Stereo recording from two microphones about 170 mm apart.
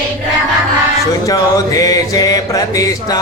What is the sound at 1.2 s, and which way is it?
Music, 20° left (ahead or behind).